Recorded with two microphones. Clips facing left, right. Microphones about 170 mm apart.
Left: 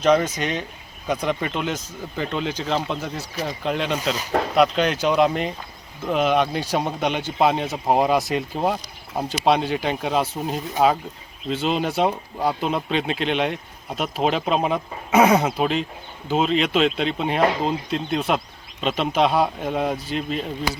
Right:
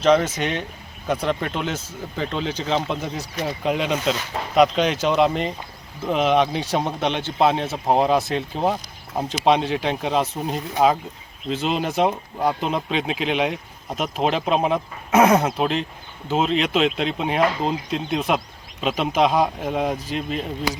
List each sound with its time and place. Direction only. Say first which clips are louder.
0.0 s speech: right 1 dB; 5° left (ahead or behind)